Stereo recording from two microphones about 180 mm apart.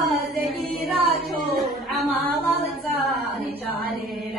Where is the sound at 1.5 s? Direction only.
5° left (ahead or behind).